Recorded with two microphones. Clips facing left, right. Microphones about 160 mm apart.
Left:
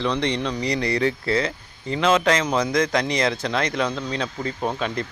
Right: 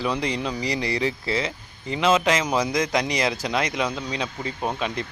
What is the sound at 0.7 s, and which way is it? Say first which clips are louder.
Speech: left 3 dB; 30° right (ahead or behind).